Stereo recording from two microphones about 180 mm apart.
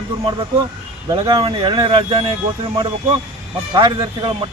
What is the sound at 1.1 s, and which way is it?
Speech, 20° right (ahead or behind).